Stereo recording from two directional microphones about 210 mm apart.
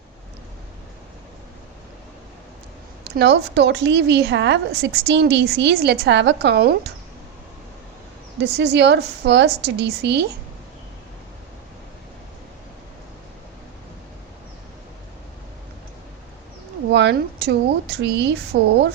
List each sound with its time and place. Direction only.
3.0 s a woman's voice: 55° right (ahead or behind)
8.5 s a woman's voice: 55° right (ahead or behind)
16.9 s a woman's voice: 55° right (ahead or behind)